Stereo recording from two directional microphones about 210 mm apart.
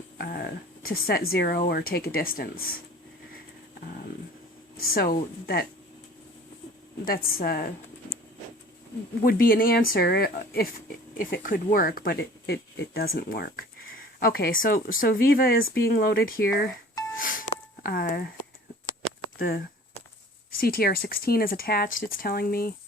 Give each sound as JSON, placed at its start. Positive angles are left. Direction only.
{"t": 0.2, "sound": "speech", "side_deg": 50}
{"t": 4.8, "sound": "speech", "side_deg": 45}
{"t": 7.0, "sound": "speech", "side_deg": 45}
{"t": 9.2, "sound": "speech", "side_deg": 45}
{"t": 17.2, "sound": "music", "side_deg": 40}
{"t": 17.8, "sound": "speech", "side_deg": 45}
{"t": 19.4, "sound": "speech", "side_deg": 45}